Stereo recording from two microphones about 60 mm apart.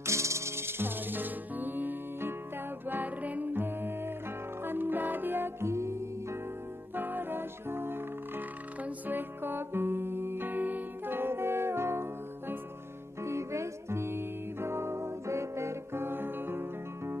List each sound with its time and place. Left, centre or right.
0.0 s music: right
7.0 s music: right